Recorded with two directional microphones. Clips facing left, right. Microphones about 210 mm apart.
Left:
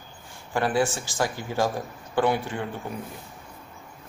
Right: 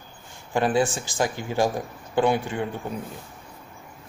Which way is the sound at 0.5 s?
20° right (ahead or behind).